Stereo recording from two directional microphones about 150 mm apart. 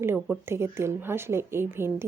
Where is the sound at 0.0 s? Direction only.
15° right (ahead or behind).